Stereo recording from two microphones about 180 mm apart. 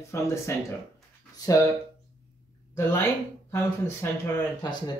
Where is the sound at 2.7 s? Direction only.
15° left (ahead or behind).